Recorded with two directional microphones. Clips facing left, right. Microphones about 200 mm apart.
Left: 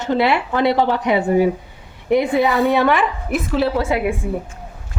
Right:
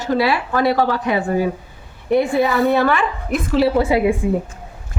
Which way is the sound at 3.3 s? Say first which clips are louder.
Right 3 dB; 5° right (ahead or behind).